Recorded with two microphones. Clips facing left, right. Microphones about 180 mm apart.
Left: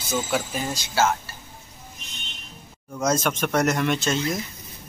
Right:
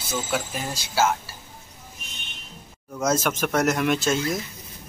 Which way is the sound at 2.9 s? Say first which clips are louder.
Even; 5° right (ahead or behind).